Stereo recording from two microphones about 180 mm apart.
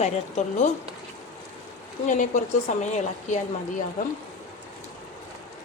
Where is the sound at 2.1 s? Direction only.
45° left (ahead or behind).